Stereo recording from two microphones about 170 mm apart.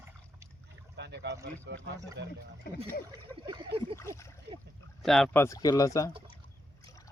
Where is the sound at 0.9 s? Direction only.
85° right.